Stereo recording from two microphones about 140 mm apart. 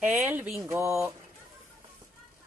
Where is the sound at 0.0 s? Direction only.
15° right (ahead or behind).